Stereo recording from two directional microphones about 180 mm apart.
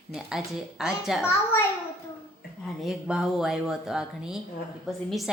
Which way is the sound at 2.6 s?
Centre (ahead or behind).